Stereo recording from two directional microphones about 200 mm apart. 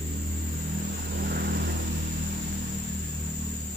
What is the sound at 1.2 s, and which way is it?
Vehicle, 50° right (ahead or behind).